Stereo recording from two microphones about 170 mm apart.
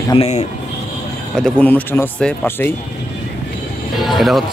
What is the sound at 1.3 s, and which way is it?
Speech, 5° left (ahead or behind).